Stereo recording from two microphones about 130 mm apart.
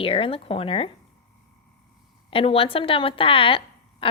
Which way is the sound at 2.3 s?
45° left (ahead or behind).